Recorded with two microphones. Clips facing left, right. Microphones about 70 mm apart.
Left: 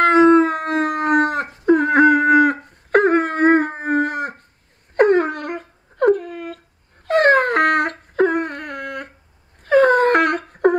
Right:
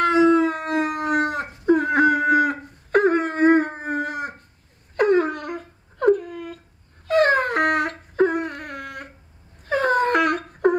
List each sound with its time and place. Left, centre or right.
0.0 s howl: left
4.9 s wail: left
7.1 s dog: left
9.7 s wail: left